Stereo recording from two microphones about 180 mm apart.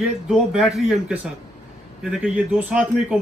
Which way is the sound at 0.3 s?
5° right (ahead or behind).